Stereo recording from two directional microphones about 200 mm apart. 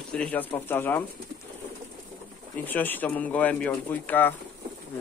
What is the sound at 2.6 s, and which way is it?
Speech, 10° left (ahead or behind).